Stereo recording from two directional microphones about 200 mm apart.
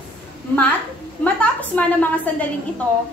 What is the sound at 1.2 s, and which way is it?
A woman's voice, 10° left (ahead or behind).